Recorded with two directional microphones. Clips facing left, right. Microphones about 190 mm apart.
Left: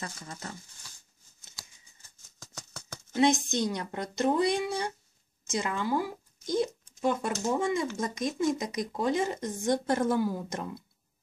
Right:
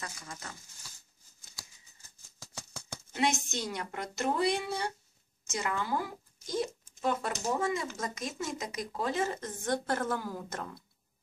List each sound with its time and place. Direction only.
0.0 s speech: 30° left (ahead or behind)
1.4 s scissors: 20° left (ahead or behind)
3.4 s speech: 20° left (ahead or behind)